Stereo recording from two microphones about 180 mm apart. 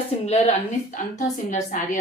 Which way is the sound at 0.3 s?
35° left (ahead or behind).